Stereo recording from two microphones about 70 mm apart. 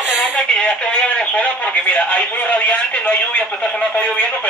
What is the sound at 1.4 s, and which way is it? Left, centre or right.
Speech, centre.